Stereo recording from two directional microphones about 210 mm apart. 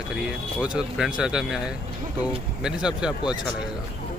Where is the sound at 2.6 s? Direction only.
5° right (ahead or behind).